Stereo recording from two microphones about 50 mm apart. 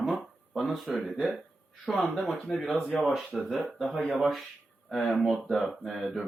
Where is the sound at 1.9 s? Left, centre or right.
Centre.